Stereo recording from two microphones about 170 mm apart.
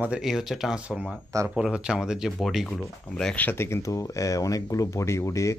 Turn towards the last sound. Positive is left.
turn(degrees=15)  # may be behind; listen again after turning